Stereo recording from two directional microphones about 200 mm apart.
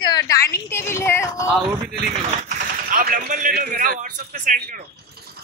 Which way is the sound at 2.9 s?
45° right (ahead or behind).